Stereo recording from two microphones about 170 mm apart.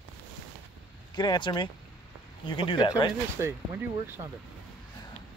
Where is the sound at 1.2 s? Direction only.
25° left (ahead or behind).